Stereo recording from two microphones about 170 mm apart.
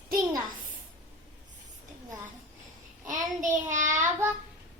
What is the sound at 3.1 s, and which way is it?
Child singing, 50° right (ahead or behind).